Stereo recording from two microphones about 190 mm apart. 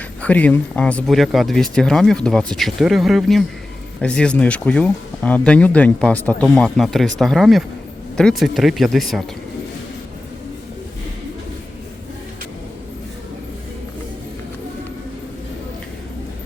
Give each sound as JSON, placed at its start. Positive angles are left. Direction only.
{"t": 0.2, "sound": "speech", "side_deg": 10}